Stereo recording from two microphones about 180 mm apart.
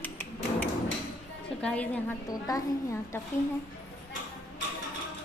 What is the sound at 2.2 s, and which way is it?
Speech, 20° left (ahead or behind).